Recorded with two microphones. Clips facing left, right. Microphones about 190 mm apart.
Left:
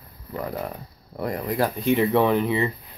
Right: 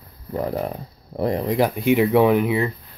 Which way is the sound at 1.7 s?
10° right (ahead or behind).